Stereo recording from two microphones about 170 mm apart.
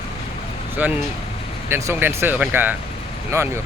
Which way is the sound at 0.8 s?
10° right (ahead or behind).